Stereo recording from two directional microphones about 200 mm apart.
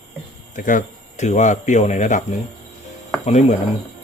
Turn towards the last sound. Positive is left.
turn(degrees=35)  # may be behind; listen again after turning